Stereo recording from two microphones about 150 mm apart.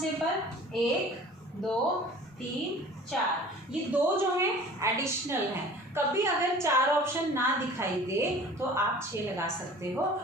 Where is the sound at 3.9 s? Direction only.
20° right (ahead or behind).